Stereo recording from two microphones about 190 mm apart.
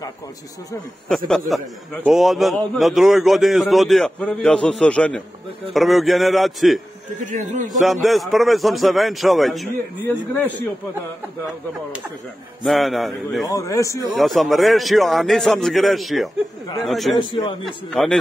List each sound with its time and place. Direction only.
1.0 s a man's voice: 5° left (ahead or behind)
7.2 s a man's voice: 45° right (ahead or behind)
7.8 s a man's voice: centre (ahead or behind)
12.6 s a man's voice: centre (ahead or behind)
13.5 s a man's voice: 15° left (ahead or behind)
14.1 s a man's voice: centre (ahead or behind)
17.3 s a man's voice: 25° left (ahead or behind)
18.0 s a man's voice: 5° left (ahead or behind)